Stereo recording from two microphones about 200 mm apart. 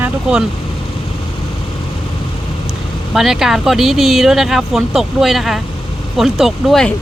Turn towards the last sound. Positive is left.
turn(degrees=0)  # may be behind; listen again after turning